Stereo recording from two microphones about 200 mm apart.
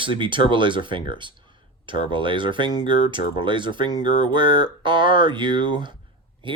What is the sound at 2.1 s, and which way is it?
Speech, 25° right (ahead or behind).